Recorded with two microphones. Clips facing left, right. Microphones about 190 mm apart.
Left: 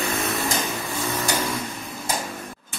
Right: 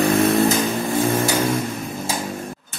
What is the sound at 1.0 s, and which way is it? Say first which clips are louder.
Vehicle: right 9 dB; 50° right (ahead or behind).